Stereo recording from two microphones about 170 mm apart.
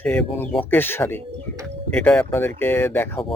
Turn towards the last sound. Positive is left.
turn(degrees=15)  # may be behind; listen again after turning